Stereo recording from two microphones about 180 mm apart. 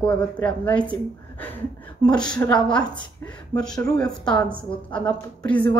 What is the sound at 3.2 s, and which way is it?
Speech, 15° left (ahead or behind).